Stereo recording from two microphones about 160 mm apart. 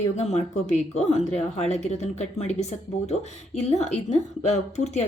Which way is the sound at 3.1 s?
40° left (ahead or behind).